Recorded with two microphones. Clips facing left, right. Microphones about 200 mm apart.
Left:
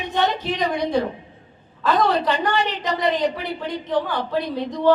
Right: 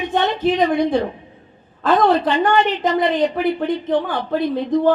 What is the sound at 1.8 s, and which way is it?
A woman's voice, 50° right (ahead or behind).